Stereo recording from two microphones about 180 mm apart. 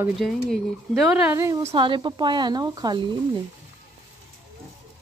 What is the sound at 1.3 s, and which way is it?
Speech, 15° right (ahead or behind).